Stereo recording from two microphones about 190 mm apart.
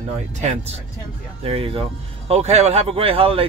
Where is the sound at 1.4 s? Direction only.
30° right (ahead or behind).